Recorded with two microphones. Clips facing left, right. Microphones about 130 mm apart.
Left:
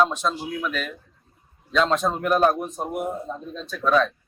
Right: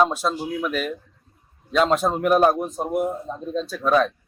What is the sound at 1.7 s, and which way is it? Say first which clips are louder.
Speech: right 2 dB; 10° right (ahead or behind).